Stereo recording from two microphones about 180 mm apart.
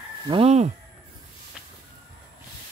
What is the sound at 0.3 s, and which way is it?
Speech, 35° right (ahead or behind).